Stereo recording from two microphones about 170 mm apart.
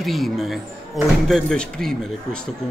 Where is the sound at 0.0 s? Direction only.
Centre (ahead or behind).